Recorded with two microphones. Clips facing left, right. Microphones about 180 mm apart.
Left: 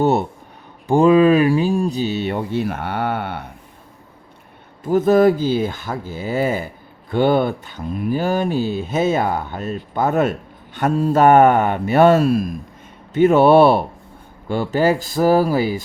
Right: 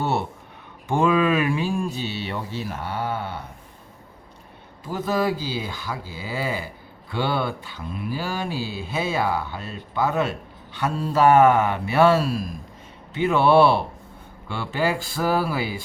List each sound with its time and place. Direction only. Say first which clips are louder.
0.0 s speech: left 8 dB; 40° left (ahead or behind); by 3.4 s 65° left (ahead or behind)
4.8 s speech: left 11 dB; 50° left (ahead or behind)